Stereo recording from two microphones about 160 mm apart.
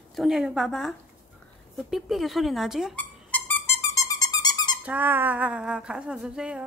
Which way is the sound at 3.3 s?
15° left (ahead or behind).